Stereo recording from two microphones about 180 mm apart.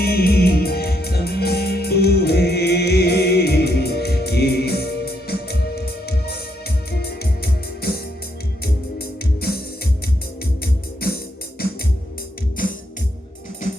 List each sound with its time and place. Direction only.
0.0 s music: 60° left (ahead or behind)